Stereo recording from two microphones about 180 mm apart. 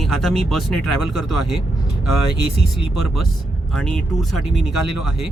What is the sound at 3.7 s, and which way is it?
Speech, 5° left (ahead or behind).